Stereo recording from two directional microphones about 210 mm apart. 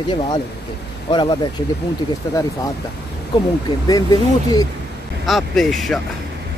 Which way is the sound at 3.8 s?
20° left (ahead or behind).